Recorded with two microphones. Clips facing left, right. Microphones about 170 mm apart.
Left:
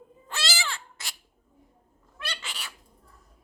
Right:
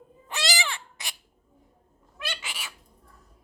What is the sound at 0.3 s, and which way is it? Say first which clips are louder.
Baby cry: right 3 dB; 15° right (ahead or behind).